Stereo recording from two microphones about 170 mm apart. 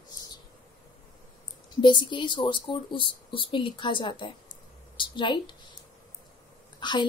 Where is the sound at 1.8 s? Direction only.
25° left (ahead or behind).